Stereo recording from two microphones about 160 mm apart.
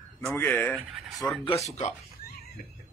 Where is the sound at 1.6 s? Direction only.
45° left (ahead or behind).